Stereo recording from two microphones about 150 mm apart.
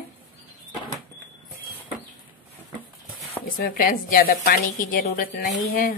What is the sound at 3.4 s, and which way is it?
A woman's voice, 70° left (ahead or behind).